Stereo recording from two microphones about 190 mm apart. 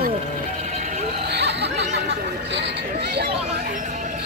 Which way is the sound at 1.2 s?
65° right (ahead or behind).